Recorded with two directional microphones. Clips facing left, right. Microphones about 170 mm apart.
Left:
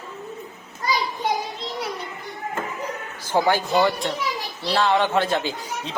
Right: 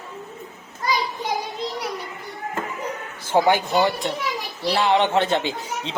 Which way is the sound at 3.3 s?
20° right (ahead or behind).